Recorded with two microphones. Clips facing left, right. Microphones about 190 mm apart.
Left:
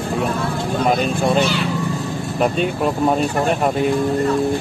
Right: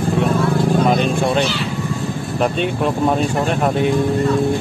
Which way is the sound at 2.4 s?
Centre (ahead or behind).